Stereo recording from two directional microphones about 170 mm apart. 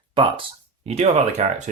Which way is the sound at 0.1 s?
30° right (ahead or behind).